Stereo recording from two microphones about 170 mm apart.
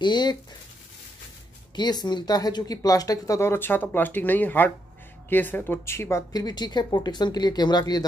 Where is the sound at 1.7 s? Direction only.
25° left (ahead or behind).